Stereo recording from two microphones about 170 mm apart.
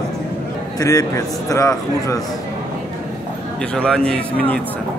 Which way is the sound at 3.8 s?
5° left (ahead or behind).